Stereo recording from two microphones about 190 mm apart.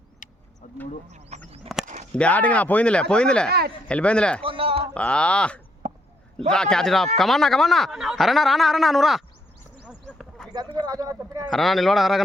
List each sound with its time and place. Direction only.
0.2 s vehicle: 40° left (ahead or behind)
0.6 s a sound: 40° left (ahead or behind)
1.1 s speech: 35° right (ahead or behind)
2.1 s speech: 5° left (ahead or behind)
4.4 s speech: 30° right (ahead or behind)
4.9 s speech: 5° left (ahead or behind)
9.8 s a sound: centre (ahead or behind)
10.5 s speech: 20° right (ahead or behind)
11.5 s speech: centre (ahead or behind)